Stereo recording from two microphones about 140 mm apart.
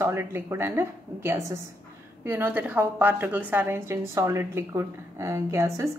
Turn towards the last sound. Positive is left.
turn(degrees=-20)  # may be behind; listen again after turning